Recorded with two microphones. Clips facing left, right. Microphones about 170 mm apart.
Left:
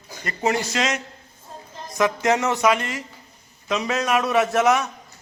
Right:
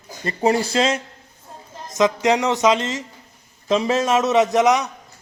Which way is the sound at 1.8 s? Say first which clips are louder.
Right 3 dB; 20° right (ahead or behind).